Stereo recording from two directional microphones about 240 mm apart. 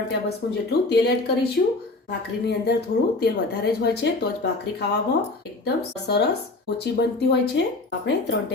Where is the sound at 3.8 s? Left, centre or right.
Left.